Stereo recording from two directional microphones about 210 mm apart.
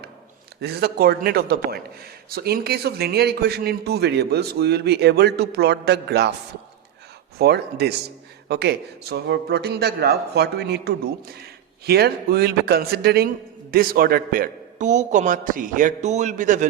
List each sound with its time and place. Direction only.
0.6 s speech: 50° right (ahead or behind)
7.3 s speech: 50° right (ahead or behind)